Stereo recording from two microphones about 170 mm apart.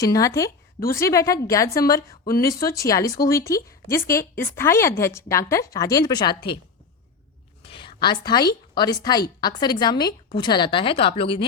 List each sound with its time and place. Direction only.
0.0 s a woman's voice: 20° left (ahead or behind)
7.6 s a woman's voice: 30° left (ahead or behind)